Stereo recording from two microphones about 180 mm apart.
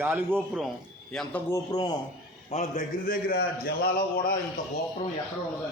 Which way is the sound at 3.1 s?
55° left (ahead or behind).